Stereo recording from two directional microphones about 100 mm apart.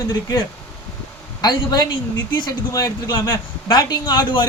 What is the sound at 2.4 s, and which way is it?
A man's voice, 40° left (ahead or behind).